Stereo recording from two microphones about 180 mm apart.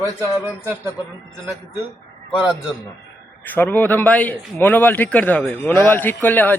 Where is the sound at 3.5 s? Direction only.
10° left (ahead or behind).